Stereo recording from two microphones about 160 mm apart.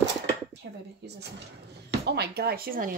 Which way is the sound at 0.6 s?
90° right.